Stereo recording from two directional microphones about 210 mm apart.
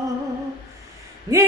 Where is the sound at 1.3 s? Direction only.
20° right (ahead or behind).